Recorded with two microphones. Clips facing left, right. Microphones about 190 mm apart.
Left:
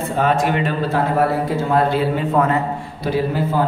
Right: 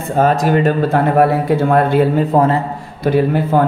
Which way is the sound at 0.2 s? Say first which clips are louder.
Right 5 dB; 40° right (ahead or behind).